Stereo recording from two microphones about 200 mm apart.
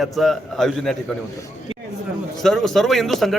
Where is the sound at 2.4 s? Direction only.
Centre (ahead or behind).